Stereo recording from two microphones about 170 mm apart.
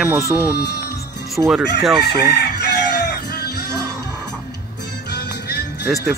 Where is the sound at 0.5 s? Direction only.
65° left (ahead or behind).